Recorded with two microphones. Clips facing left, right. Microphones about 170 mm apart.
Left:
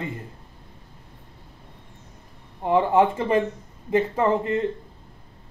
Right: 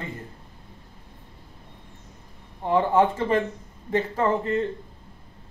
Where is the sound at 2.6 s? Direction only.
20° left (ahead or behind).